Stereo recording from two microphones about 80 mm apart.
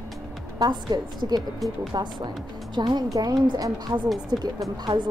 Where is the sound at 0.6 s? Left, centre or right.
Right.